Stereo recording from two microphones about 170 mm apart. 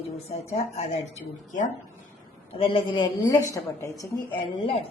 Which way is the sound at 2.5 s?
35° left (ahead or behind).